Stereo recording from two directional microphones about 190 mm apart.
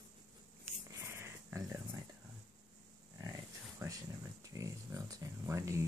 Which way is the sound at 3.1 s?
20° right (ahead or behind).